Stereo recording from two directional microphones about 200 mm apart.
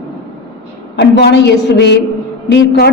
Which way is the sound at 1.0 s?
60° left (ahead or behind).